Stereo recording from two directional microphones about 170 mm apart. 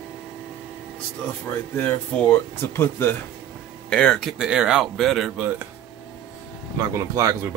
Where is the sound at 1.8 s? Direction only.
10° left (ahead or behind).